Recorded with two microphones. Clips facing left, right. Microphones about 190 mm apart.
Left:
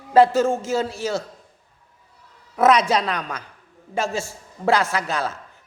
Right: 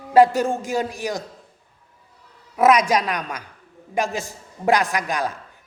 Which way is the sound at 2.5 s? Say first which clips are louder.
Right 1 dB; 10° right (ahead or behind).